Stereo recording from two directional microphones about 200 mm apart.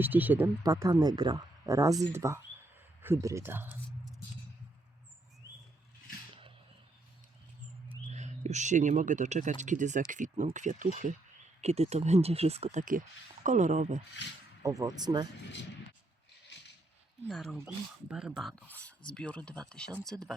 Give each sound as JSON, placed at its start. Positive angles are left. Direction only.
{"t": 0.0, "sound": "speech", "side_deg": -10}
{"t": 8.0, "sound": "speech", "side_deg": -35}
{"t": 14.6, "sound": "speech", "side_deg": -15}
{"t": 17.2, "sound": "speech", "side_deg": 0}